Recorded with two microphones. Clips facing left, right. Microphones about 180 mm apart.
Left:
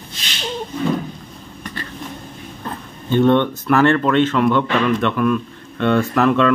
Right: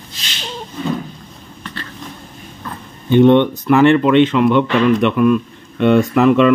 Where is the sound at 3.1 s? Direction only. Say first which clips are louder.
Right 5 dB; 15° right (ahead or behind).